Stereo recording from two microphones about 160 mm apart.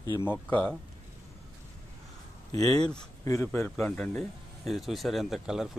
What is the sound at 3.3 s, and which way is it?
Speech, 15° left (ahead or behind).